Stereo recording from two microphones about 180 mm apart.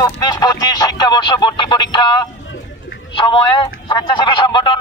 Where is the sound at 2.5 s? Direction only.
85° left.